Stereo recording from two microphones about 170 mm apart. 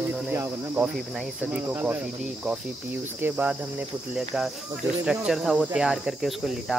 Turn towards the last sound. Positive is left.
turn(degrees=0)  # may be behind; listen again after turning